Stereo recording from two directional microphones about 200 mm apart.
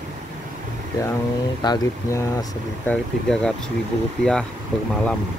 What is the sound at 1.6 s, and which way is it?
Speech, 15° left (ahead or behind).